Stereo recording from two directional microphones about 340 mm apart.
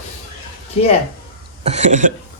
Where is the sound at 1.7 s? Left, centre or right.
Centre.